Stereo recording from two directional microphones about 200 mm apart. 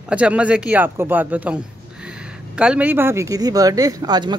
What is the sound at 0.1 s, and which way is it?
Speech, 5° right (ahead or behind).